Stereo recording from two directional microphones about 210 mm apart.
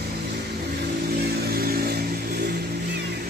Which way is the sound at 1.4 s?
45° right (ahead or behind).